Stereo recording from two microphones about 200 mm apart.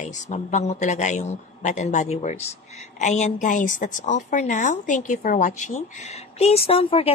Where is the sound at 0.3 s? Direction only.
35° left (ahead or behind).